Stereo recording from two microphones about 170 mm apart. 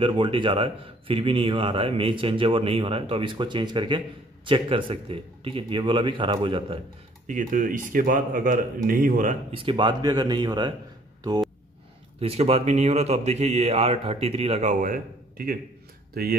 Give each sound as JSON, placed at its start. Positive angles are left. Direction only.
{"t": 0.0, "sound": "a man's voice", "side_deg": -30}
{"t": 7.2, "sound": "speech", "side_deg": -50}
{"t": 9.5, "sound": "speech", "side_deg": -30}
{"t": 12.2, "sound": "a man's voice", "side_deg": -35}